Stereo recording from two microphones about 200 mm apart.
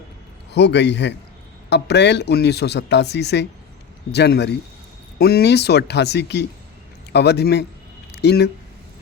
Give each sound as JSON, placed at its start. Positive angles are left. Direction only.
{"t": 0.5, "sound": "speech", "side_deg": 60}